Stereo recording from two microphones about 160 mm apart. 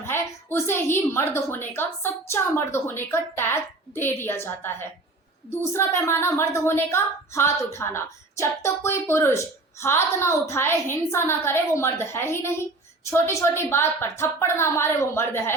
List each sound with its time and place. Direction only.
0.0 s a woman's voice: 15° left (ahead or behind)